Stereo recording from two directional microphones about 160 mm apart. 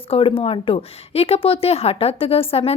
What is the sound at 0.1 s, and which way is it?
A woman's voice, 35° left (ahead or behind).